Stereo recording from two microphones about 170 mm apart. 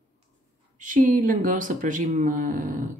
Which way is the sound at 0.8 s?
50° right (ahead or behind).